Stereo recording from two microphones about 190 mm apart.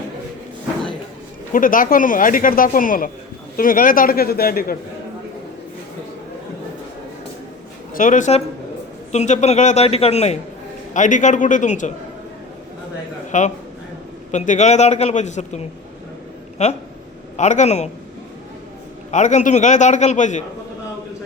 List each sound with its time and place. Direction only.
1.5 s speech: 45° left (ahead or behind)
7.9 s a man's voice: 45° left (ahead or behind)
13.3 s a man's voice: 40° left (ahead or behind)
19.1 s a man's voice: 40° left (ahead or behind)